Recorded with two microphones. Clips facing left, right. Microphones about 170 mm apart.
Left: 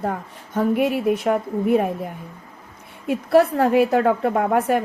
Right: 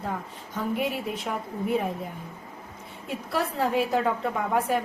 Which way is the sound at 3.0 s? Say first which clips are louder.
Left 13 dB; 60° left (ahead or behind).